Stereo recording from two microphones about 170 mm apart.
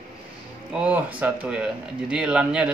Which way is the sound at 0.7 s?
5° right (ahead or behind).